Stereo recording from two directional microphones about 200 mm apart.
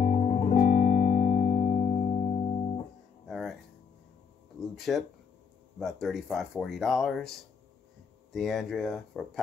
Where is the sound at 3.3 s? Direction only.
Centre (ahead or behind).